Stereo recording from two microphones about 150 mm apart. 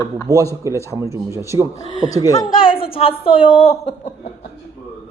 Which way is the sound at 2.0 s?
25° left (ahead or behind).